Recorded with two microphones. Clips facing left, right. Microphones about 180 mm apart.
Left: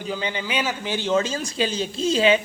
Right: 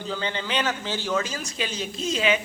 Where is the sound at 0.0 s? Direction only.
15° left (ahead or behind).